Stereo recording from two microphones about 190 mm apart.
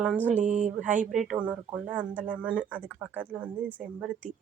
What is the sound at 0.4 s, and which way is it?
Speech, 40° right (ahead or behind).